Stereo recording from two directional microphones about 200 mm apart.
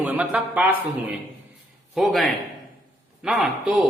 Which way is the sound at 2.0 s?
Centre (ahead or behind).